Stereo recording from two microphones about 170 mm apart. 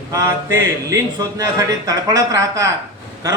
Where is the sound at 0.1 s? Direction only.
20° right (ahead or behind).